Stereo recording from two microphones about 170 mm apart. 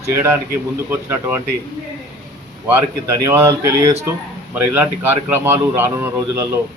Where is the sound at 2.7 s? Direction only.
20° right (ahead or behind).